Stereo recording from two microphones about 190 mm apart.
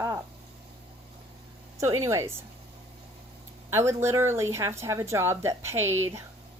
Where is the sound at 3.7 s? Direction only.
15° right (ahead or behind).